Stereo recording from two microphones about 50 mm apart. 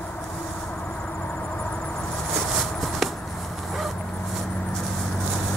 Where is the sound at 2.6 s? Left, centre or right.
Centre.